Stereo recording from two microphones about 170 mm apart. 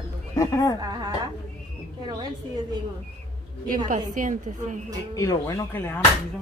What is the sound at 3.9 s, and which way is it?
Speech, 50° right (ahead or behind).